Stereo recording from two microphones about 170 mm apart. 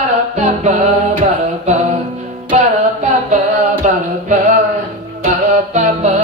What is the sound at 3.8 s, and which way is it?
Music, 45° right (ahead or behind).